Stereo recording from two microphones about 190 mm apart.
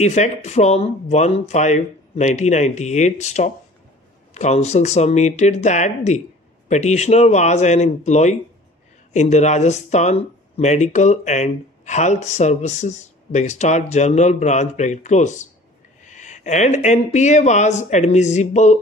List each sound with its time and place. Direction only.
0.0 s speech: 35° left (ahead or behind)